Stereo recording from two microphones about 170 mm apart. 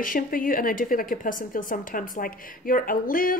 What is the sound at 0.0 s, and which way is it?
A woman's voice, 55° left (ahead or behind).